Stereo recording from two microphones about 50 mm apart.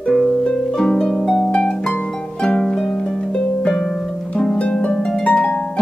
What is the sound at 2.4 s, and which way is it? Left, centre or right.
Harp, centre.